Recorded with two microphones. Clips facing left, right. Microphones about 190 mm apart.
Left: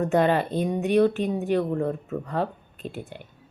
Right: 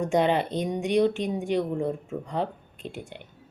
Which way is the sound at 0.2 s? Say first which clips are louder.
Left 1 dB; 20° right (ahead or behind).